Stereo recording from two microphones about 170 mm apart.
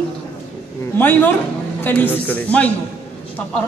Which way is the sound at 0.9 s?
10° left (ahead or behind).